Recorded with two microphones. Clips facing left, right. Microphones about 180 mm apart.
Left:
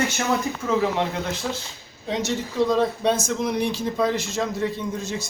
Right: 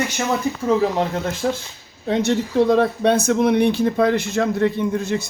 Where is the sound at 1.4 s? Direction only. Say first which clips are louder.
Right 7 dB; 50° right (ahead or behind).